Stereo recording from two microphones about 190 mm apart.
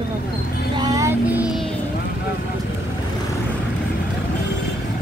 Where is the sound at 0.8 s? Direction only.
20° right (ahead or behind).